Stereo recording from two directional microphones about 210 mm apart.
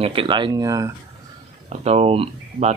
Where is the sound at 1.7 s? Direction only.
30° right (ahead or behind).